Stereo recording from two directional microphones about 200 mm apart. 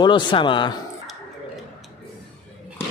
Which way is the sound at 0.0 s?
25° left (ahead or behind).